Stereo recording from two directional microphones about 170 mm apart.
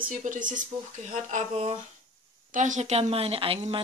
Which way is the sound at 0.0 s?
50° right (ahead or behind).